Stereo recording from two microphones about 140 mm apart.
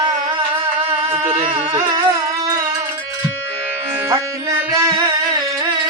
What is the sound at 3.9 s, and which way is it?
Music, 20° right (ahead or behind).